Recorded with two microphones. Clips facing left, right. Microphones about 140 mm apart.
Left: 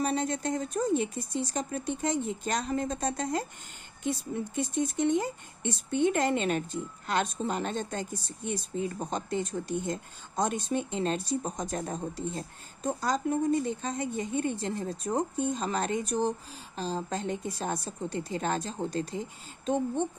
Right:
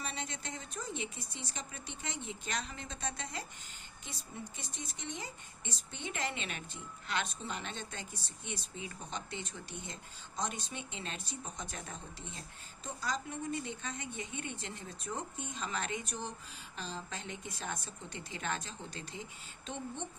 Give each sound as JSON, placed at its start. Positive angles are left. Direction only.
{"t": 0.0, "sound": "speech", "side_deg": 45}
{"t": 4.0, "sound": "speech", "side_deg": 55}